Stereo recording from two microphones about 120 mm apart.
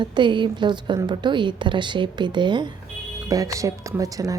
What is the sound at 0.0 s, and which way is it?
A woman's voice, 40° right (ahead or behind).